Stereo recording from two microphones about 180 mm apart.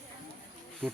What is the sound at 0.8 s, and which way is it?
Speech, 5° left (ahead or behind).